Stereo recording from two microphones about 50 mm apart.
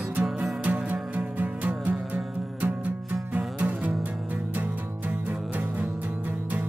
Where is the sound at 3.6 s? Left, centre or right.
Right.